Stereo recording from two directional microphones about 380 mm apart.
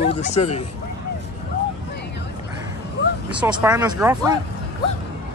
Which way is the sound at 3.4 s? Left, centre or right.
Centre.